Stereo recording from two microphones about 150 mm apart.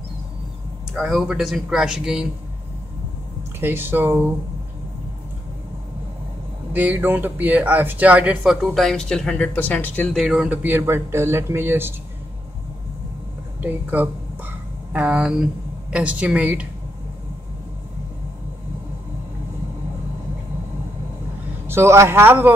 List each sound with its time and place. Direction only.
0.9 s speech: centre (ahead or behind)
3.5 s speech: 15° right (ahead or behind)
6.7 s speech: 10° right (ahead or behind)
8.7 s speech: 5° left (ahead or behind)
10.1 s speech: centre (ahead or behind)
13.6 s speech: 10° right (ahead or behind)
21.6 s speech: 20° right (ahead or behind)